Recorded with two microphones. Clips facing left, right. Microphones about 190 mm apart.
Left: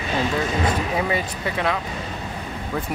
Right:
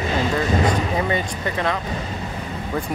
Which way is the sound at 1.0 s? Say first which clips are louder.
Right 1 dB; 5° left (ahead or behind).